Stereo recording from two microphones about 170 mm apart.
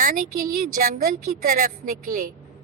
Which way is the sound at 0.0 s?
50° right (ahead or behind).